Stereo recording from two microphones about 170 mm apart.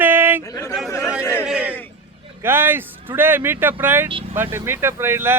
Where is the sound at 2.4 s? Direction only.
15° right (ahead or behind).